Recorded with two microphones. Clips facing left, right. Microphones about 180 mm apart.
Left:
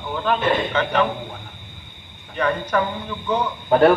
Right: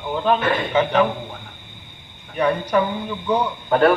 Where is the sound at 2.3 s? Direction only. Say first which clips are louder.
Right 2 dB; 10° right (ahead or behind).